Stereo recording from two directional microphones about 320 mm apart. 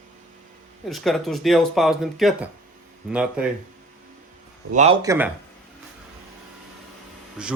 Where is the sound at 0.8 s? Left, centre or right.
Centre.